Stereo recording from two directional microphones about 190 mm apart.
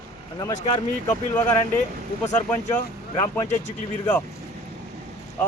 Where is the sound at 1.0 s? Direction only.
10° left (ahead or behind).